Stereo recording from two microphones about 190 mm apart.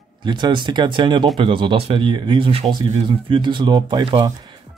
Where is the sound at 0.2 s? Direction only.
25° right (ahead or behind).